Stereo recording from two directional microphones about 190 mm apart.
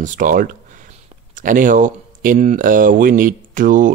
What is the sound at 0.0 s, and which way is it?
Speech, 45° right (ahead or behind).